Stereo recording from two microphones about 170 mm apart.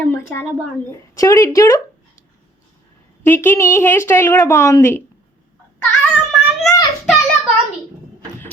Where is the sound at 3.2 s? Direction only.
15° left (ahead or behind).